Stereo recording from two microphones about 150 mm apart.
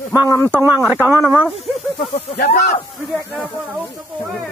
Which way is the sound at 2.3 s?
90° left.